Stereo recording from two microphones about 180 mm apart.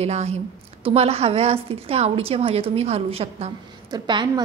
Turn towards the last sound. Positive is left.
turn(degrees=-25)  # may be behind; listen again after turning